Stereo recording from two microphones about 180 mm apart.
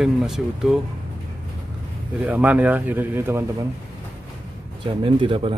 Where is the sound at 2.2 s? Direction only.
10° right (ahead or behind).